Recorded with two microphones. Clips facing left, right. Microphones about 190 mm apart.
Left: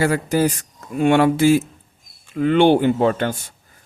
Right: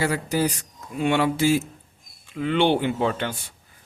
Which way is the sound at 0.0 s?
50° left (ahead or behind).